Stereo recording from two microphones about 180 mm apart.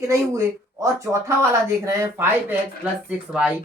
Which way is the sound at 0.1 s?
15° right (ahead or behind).